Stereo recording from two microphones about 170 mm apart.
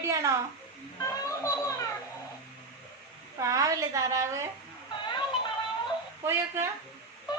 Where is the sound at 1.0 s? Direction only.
20° left (ahead or behind).